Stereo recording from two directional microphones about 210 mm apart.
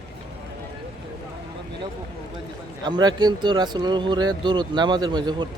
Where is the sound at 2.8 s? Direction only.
20° right (ahead or behind).